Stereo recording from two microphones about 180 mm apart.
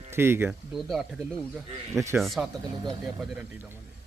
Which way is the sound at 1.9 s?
15° right (ahead or behind).